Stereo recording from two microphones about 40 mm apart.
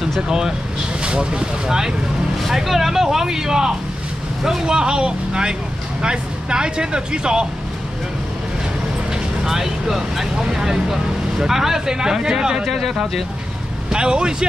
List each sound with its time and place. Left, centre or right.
1.0 s speech: right
2.4 s speech: centre; by 7.4 s right
9.4 s speech: centre
12.6 s speech: centre
13.8 s speech: right